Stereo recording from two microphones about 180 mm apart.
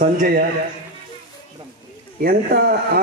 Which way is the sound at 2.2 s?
55° right (ahead or behind).